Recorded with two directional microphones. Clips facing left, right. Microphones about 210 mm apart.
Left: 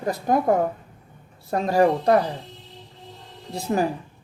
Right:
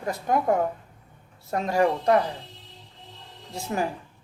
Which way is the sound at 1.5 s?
35° left (ahead or behind).